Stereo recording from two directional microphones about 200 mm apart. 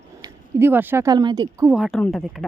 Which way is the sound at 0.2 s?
10° right (ahead or behind).